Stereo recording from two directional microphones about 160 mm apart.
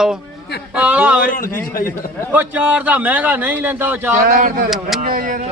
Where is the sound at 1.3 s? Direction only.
60° left (ahead or behind).